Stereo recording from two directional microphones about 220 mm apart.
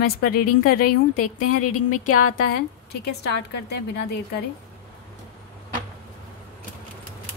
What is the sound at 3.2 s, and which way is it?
Speech, 50° left (ahead or behind).